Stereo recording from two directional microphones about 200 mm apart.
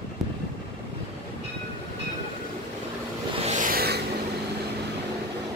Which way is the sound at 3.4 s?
40° right (ahead or behind).